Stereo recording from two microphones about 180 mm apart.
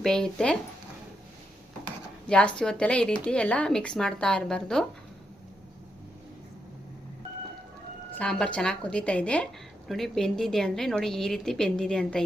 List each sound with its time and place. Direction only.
0.0 s speech: 5° left (ahead or behind)
2.2 s speech: 5° left (ahead or behind)
8.2 s a woman's voice: 5° left (ahead or behind)